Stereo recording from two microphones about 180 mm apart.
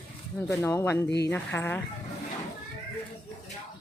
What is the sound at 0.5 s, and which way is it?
Speech, 15° left (ahead or behind).